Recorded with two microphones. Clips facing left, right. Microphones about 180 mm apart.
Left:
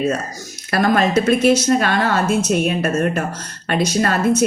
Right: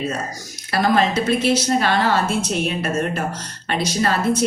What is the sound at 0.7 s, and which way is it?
A woman's voice, 50° left (ahead or behind).